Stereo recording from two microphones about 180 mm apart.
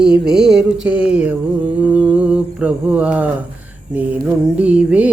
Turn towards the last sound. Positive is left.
turn(degrees=-5)  # may be behind; listen again after turning